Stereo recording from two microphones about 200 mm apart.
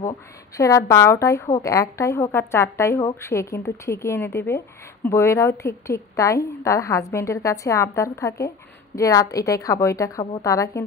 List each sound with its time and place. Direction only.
0.6 s a woman's voice: 15° left (ahead or behind)